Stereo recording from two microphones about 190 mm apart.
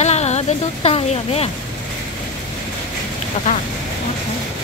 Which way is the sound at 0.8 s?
30° left (ahead or behind).